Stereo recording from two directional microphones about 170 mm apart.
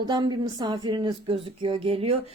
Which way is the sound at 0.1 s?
25° right (ahead or behind).